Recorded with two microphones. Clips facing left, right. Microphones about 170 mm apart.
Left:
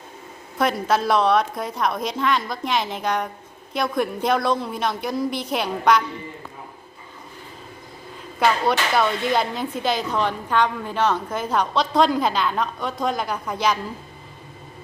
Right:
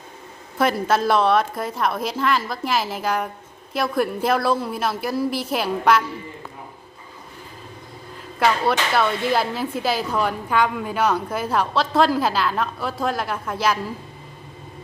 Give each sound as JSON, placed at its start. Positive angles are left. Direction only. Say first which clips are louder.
{"t": 0.6, "sound": "speech", "louder": "right 1 dB", "side_deg": 0}
{"t": 8.4, "sound": "speech", "louder": "even", "side_deg": 0}